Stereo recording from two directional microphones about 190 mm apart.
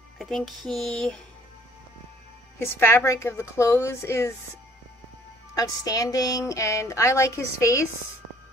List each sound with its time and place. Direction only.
0.2 s a sound: centre (ahead or behind)
2.6 s a woman's voice: 10° left (ahead or behind)
5.5 s a woman's voice: 20° left (ahead or behind)